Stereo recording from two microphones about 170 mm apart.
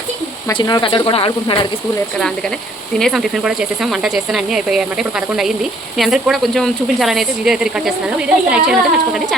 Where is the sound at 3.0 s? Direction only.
Centre (ahead or behind).